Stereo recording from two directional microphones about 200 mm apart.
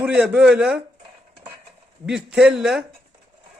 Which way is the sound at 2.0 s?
5° right (ahead or behind).